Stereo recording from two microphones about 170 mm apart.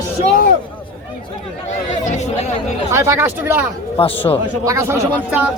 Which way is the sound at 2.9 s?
15° right (ahead or behind).